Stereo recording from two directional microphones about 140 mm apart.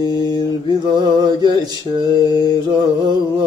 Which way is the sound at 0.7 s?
30° right (ahead or behind).